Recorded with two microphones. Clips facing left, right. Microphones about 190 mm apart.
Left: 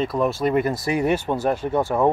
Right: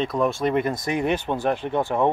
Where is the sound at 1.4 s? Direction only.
40° left (ahead or behind).